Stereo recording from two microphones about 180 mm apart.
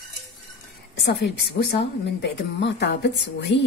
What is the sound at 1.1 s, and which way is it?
A woman's voice, 65° left (ahead or behind).